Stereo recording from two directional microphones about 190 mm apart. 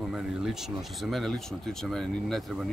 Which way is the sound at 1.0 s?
Centre (ahead or behind).